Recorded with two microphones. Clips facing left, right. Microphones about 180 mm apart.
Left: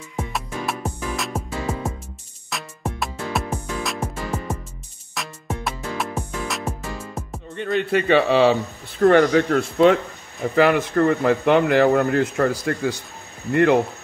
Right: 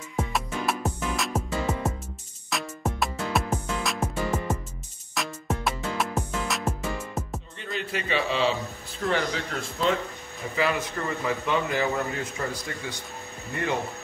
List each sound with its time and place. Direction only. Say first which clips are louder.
0.1 s music: even; centre (ahead or behind)
7.5 s speech: left 12 dB; 60° left (ahead or behind)